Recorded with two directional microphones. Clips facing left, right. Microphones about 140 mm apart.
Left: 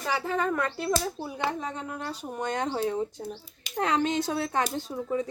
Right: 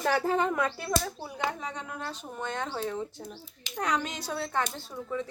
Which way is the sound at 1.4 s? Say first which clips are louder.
Left 1 dB; 5° left (ahead or behind).